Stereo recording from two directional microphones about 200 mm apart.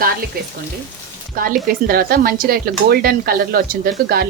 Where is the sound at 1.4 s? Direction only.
45° right (ahead or behind).